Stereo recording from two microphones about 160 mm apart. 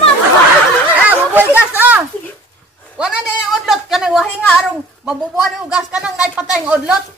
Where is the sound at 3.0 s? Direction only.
5° right (ahead or behind).